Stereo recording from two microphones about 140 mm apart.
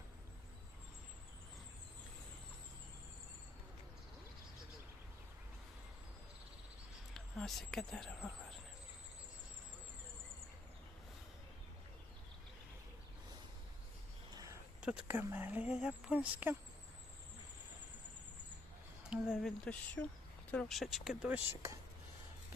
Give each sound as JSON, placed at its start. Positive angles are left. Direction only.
{"t": 7.1, "sound": "speech", "side_deg": 0}
{"t": 14.3, "sound": "a sound", "side_deg": -20}
{"t": 14.8, "sound": "speech", "side_deg": -10}
{"t": 19.1, "sound": "speech", "side_deg": 0}